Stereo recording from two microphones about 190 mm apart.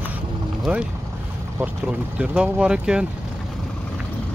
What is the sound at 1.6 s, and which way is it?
Speech, 5° right (ahead or behind).